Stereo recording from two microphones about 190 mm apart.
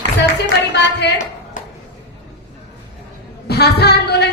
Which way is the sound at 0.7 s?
65° left (ahead or behind).